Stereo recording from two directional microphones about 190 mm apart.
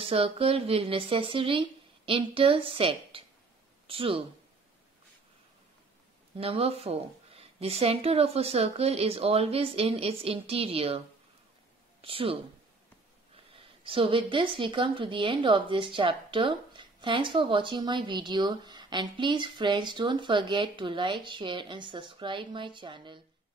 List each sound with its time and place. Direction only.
0.0 s a woman's voice: 30° right (ahead or behind)
6.3 s a woman's voice: 30° right (ahead or behind)
12.0 s a woman's voice: 30° right (ahead or behind)
13.5 s a woman's voice: 30° right (ahead or behind)